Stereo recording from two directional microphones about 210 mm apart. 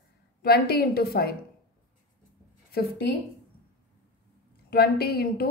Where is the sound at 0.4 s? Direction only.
50° left (ahead or behind).